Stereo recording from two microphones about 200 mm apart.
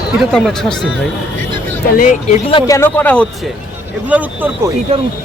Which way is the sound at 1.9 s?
40° left (ahead or behind).